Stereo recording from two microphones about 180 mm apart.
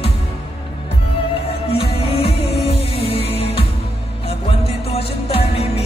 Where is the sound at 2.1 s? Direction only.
30° left (ahead or behind).